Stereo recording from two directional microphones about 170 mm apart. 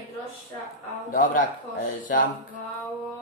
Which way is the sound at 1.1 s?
50° left (ahead or behind).